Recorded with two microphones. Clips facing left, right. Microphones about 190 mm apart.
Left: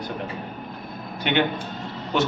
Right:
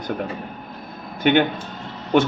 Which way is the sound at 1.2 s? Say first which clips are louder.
Right 5 dB; 50° right (ahead or behind).